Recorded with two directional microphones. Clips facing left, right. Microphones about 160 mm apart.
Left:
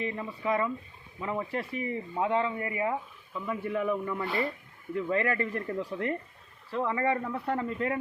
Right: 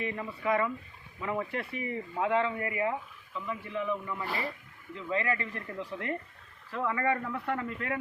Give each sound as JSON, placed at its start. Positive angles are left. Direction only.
{"t": 0.4, "sound": "speech", "side_deg": 30}
{"t": 3.4, "sound": "a man's voice", "side_deg": 45}
{"t": 4.2, "sound": "speech", "side_deg": 0}
{"t": 4.9, "sound": "a man's voice", "side_deg": 50}
{"t": 5.6, "sound": "speech", "side_deg": 35}